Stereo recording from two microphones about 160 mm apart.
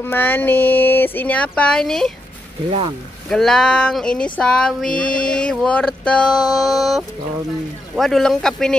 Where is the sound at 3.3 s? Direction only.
5° left (ahead or behind).